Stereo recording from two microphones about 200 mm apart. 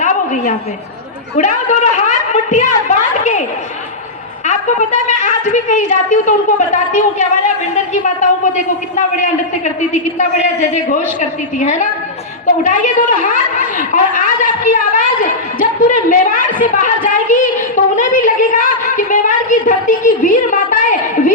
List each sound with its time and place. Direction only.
1.4 s a woman's voice: 40° left (ahead or behind)
4.4 s a woman's voice: 35° left (ahead or behind)